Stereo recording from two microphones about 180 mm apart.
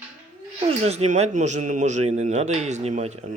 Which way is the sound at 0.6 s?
35° right (ahead or behind).